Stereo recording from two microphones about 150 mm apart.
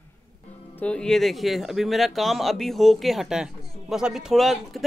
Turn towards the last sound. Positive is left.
turn(degrees=0)  # may be behind; listen again after turning